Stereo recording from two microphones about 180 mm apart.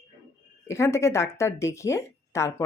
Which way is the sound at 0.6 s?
15° left (ahead or behind).